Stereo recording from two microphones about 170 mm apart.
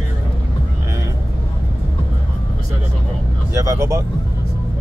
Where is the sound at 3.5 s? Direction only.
20° right (ahead or behind).